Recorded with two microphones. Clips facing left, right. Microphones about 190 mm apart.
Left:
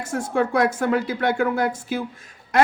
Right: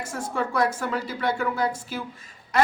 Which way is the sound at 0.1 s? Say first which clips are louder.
Left 7 dB; 55° left (ahead or behind).